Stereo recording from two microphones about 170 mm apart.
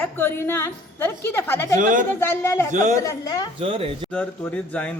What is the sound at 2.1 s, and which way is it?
Speech, 15° left (ahead or behind).